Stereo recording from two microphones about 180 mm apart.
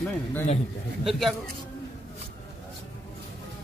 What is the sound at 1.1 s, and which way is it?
Speech, centre (ahead or behind).